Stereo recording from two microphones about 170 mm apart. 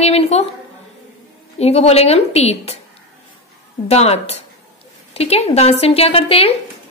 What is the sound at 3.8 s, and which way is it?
A woman's voice, 40° left (ahead or behind).